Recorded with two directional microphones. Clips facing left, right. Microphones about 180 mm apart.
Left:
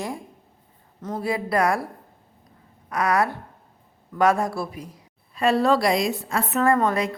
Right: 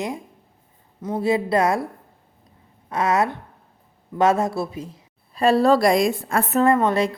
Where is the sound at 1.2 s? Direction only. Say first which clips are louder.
Right 3 dB; 25° right (ahead or behind); by 6.4 s 50° right (ahead or behind).